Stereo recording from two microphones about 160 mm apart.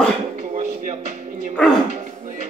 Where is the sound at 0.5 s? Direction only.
50° right (ahead or behind).